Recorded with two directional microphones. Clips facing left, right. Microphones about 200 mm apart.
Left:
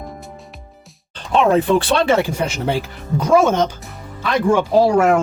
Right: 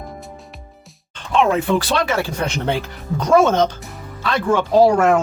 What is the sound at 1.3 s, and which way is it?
Speech, 35° left (ahead or behind).